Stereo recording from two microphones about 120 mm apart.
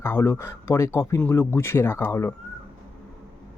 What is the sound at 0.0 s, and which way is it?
Speech, 20° left (ahead or behind).